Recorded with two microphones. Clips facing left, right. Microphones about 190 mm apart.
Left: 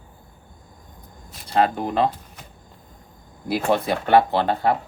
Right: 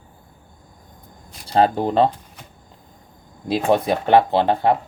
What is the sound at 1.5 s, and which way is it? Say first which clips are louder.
Speech: right 4 dB; 30° right (ahead or behind).